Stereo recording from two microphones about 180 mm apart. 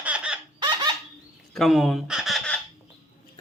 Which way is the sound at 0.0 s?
5° right (ahead or behind).